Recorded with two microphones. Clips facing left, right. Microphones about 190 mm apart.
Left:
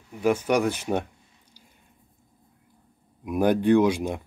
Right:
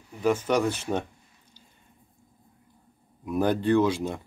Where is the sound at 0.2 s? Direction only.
10° left (ahead or behind).